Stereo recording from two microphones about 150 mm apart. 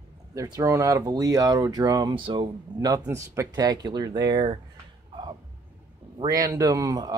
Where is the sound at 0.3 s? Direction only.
20° right (ahead or behind).